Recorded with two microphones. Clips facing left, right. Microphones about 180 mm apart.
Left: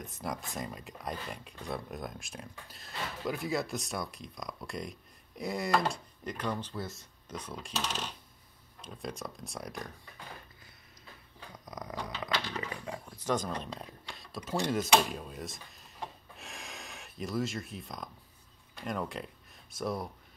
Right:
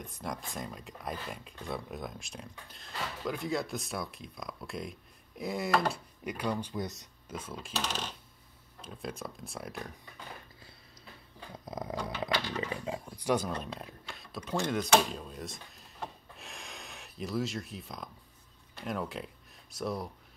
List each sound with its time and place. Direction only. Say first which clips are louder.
0.0 s speech: left 1 dB; centre (ahead or behind); by 7.1 s 20° right (ahead or behind)
7.2 s speech: even; 5° right (ahead or behind)
8.8 s speech: even; 5° right (ahead or behind)
11.5 s dog: right 4 dB; 25° right (ahead or behind); by 13.5 s 10° right (ahead or behind)
13.7 s speech: right 1 dB; centre (ahead or behind)
16.3 s a sound: left 2 dB; centre (ahead or behind)
18.8 s speech: even; centre (ahead or behind)